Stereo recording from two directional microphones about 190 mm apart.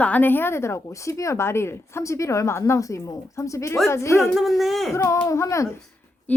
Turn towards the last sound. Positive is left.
turn(degrees=15)  # may be behind; listen again after turning